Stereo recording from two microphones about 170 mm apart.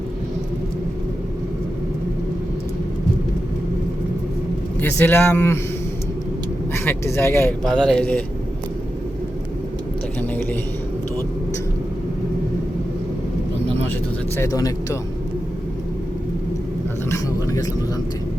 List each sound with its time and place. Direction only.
4.8 s speech: 10° left (ahead or behind)
6.8 s speech: 15° left (ahead or behind)
7.6 s speech: 5° left (ahead or behind)
10.2 s speech: 10° left (ahead or behind)
14.3 s speech: 20° left (ahead or behind)
17.1 s a sound: 20° left (ahead or behind)